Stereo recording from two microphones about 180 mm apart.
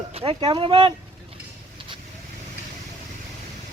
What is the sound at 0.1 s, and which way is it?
Speech, 30° right (ahead or behind).